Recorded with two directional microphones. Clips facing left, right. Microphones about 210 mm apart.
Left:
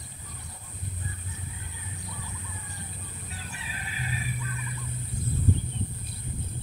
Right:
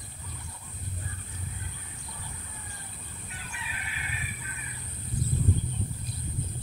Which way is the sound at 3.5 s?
35° left (ahead or behind).